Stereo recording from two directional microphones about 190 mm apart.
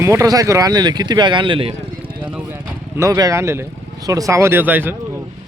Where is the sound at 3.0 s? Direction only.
15° right (ahead or behind).